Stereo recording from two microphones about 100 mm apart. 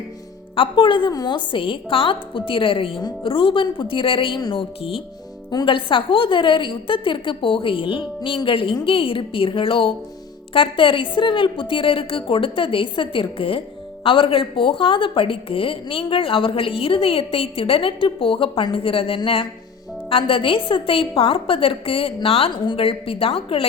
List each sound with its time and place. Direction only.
0.5 s a woman's voice: 60° left (ahead or behind)
1.1 s a woman's voice: 45° left (ahead or behind)
4.8 s a woman's voice: 70° left (ahead or behind)
5.6 s a woman's voice: 60° left (ahead or behind)